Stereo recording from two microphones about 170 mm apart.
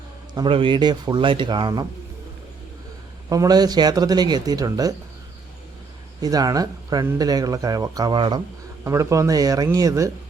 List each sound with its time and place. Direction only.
0.3 s speech: 30° right (ahead or behind)
3.2 s speech: 20° right (ahead or behind)
6.2 s speech: 20° right (ahead or behind)